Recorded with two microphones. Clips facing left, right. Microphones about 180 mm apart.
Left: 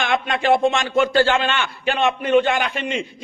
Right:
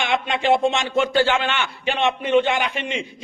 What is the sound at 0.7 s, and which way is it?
A man's voice, 20° right (ahead or behind).